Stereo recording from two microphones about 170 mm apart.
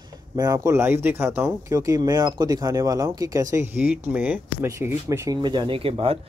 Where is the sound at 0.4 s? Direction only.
20° right (ahead or behind).